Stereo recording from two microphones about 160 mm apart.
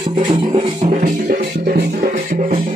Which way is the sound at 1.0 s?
55° right (ahead or behind).